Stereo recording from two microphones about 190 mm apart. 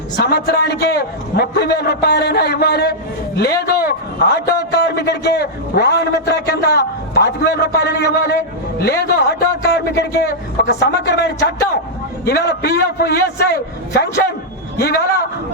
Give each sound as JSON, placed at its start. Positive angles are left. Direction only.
{"t": 0.2, "sound": "a man's voice", "side_deg": 60}